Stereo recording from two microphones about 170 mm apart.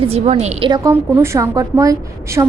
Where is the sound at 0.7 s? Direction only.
15° right (ahead or behind).